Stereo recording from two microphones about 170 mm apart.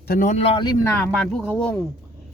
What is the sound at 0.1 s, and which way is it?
Speech, 50° left (ahead or behind).